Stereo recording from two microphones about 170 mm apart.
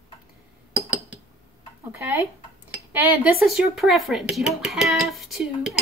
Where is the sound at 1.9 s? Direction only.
15° right (ahead or behind).